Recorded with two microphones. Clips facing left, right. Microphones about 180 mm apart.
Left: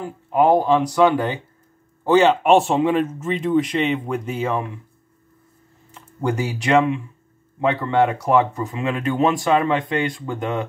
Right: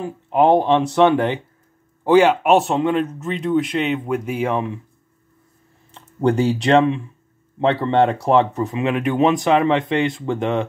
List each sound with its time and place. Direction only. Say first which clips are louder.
0.0 s speech: right 1 dB; 25° right (ahead or behind)
5.9 s speech: right 5 dB; 30° right (ahead or behind)